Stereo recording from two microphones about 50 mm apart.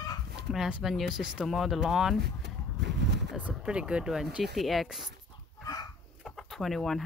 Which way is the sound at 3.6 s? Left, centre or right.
Centre.